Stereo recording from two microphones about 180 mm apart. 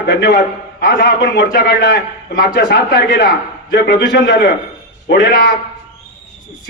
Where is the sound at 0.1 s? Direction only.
65° left (ahead or behind); by 5.5 s 85° left.